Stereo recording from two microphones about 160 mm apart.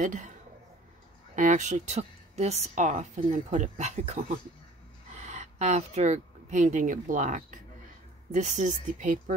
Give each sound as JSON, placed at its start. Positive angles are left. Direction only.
{"t": 0.0, "sound": "a woman's voice", "side_deg": -50}
{"t": 1.3, "sound": "a woman's voice", "side_deg": -50}